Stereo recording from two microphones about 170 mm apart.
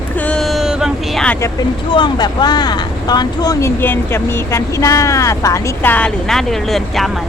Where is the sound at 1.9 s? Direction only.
25° left (ahead or behind).